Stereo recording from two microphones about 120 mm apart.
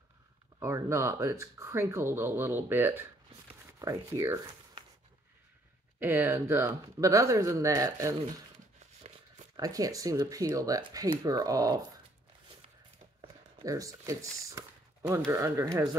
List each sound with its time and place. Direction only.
0.6 s speech: 25° right (ahead or behind)
5.9 s speech: 20° right (ahead or behind)
9.6 s speech: 30° right (ahead or behind)
13.7 s speech: 25° right (ahead or behind)